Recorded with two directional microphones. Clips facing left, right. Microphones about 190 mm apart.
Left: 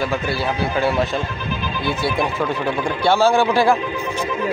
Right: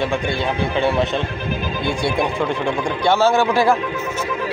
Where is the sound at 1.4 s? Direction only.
55° right (ahead or behind).